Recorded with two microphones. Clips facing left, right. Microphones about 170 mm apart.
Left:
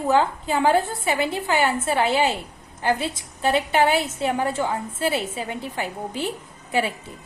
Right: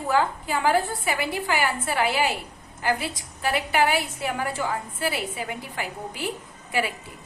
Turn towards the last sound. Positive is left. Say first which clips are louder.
# left 3 dB
turn(degrees=25)  # may be behind; listen again after turning